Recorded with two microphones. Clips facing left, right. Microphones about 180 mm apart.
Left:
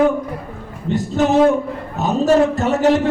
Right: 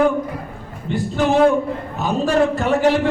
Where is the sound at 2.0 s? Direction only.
40° left (ahead or behind).